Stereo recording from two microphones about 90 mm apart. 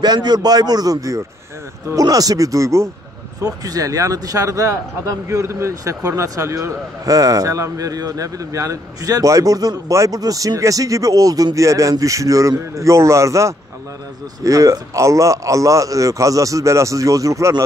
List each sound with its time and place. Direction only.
0.0 s a man's voice: 50° right (ahead or behind)